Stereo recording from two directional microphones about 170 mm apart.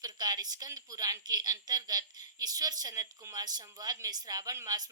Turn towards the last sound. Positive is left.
turn(degrees=-20)  # may be behind; listen again after turning